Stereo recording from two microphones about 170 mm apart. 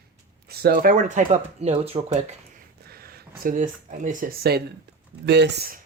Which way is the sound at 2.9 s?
65° right (ahead or behind).